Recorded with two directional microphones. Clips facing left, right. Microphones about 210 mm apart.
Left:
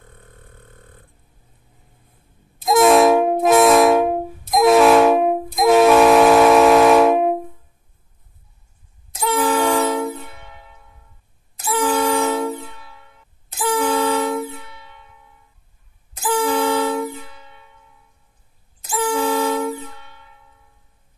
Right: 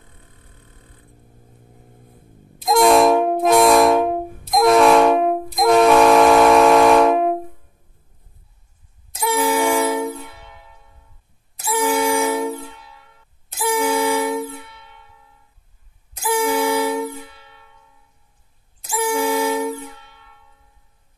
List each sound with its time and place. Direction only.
0.0 s a sound: 50° left (ahead or behind)
2.6 s vehicle horn: centre (ahead or behind)
4.5 s train: centre (ahead or behind)
9.2 s vehicle horn: 10° right (ahead or behind)
11.6 s vehicle: 10° right (ahead or behind)
13.6 s music: 10° right (ahead or behind)
16.2 s music: 10° right (ahead or behind)
18.9 s vehicle horn: 10° right (ahead or behind)